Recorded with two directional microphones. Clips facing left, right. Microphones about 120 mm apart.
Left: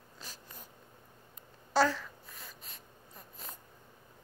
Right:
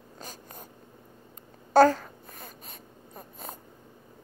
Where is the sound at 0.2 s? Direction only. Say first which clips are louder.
Right 7 dB; 50° right (ahead or behind).